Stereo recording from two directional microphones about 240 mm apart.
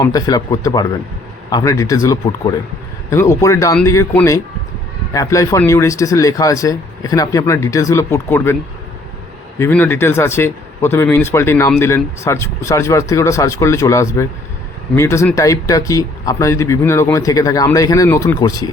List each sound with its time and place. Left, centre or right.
0.0 s speech: centre
9.6 s speech: centre